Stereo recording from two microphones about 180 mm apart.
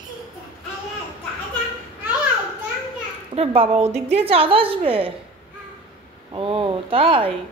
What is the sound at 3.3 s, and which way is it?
A woman's voice, 30° right (ahead or behind).